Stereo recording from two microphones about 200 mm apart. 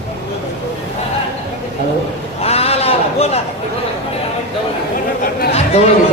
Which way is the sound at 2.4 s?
30° left (ahead or behind).